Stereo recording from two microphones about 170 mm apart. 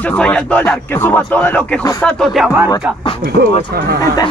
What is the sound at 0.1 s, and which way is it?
Speech, 10° left (ahead or behind).